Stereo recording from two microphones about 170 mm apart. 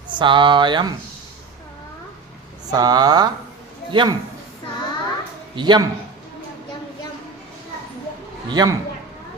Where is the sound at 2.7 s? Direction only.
25° right (ahead or behind).